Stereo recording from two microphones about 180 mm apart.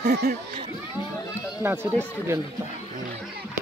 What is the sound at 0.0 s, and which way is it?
Speech, 65° right (ahead or behind).